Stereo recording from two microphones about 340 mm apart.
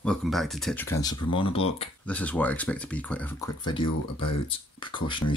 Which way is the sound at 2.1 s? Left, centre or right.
Centre.